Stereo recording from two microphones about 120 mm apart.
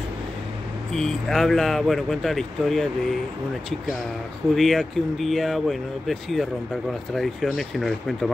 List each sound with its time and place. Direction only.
0.9 s speech: 5° left (ahead or behind)
4.6 s speech: centre (ahead or behind)